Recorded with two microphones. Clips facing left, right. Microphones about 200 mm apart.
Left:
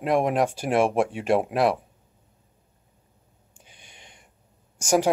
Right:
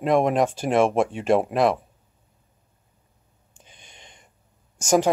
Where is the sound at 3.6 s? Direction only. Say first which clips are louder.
Right 2 dB; 10° left (ahead or behind).